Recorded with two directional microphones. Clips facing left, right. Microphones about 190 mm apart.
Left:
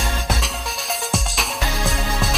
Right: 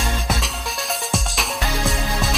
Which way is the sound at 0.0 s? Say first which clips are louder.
Right 1 dB; centre (ahead or behind).